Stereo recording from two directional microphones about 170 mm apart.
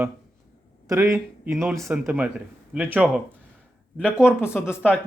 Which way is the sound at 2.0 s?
10° right (ahead or behind).